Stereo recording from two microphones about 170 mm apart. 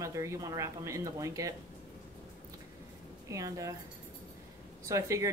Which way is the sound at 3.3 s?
20° right (ahead or behind).